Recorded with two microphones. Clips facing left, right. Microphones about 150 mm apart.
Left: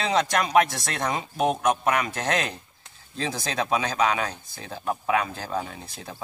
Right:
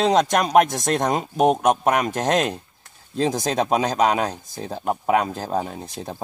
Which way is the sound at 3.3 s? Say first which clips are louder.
Right 5 dB; 45° right (ahead or behind).